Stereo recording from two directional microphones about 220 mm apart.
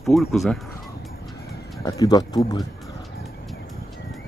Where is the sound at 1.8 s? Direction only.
15° left (ahead or behind).